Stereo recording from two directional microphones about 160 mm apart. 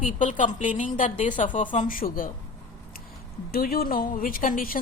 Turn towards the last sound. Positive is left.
turn(degrees=60)  # may be behind; listen again after turning